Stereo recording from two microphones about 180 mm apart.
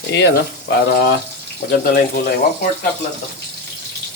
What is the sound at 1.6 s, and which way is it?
Speech, 60° left (ahead or behind).